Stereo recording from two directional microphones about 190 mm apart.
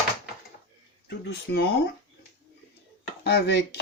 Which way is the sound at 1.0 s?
60° left (ahead or behind).